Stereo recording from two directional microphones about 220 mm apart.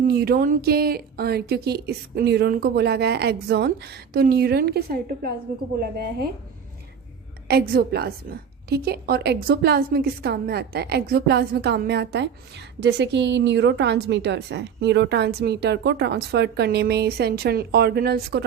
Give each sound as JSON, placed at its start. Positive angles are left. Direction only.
{"t": 0.1, "sound": "a woman's voice", "side_deg": -45}
{"t": 7.7, "sound": "a woman's voice", "side_deg": -45}